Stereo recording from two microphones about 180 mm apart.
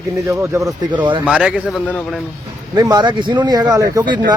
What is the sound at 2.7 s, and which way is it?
A man's voice, 20° right (ahead or behind).